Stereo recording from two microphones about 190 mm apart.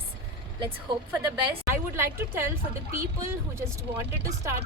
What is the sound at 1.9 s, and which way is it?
Speech, 10° right (ahead or behind).